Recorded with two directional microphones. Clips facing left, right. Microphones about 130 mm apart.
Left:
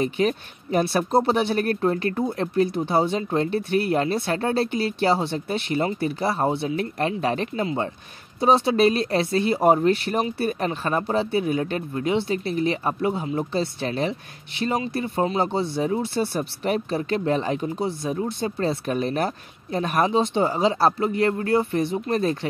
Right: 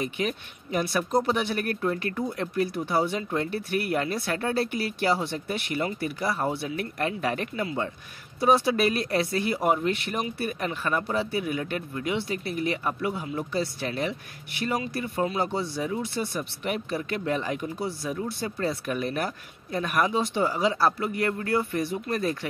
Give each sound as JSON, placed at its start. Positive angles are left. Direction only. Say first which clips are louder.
{"t": 0.0, "sound": "speech", "louder": "left 7 dB", "side_deg": 35}